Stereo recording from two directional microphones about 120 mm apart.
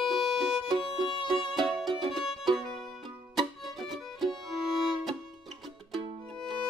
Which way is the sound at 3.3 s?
Centre (ahead or behind).